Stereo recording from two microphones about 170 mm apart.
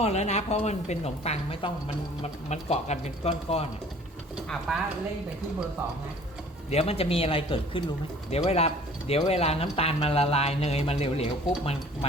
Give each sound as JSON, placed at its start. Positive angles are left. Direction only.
{"t": 0.0, "sound": "speech", "side_deg": 40}
{"t": 6.7, "sound": "speech", "side_deg": 35}